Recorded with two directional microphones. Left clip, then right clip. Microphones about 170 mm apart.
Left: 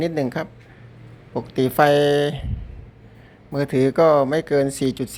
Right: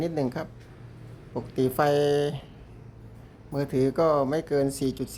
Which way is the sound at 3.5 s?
15° left (ahead or behind).